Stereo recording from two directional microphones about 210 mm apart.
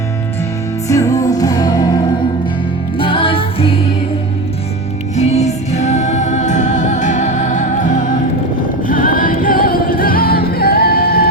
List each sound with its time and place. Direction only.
0.9 s music: 15° left (ahead or behind)
3.0 s music: 25° left (ahead or behind)
5.1 s music: 30° left (ahead or behind)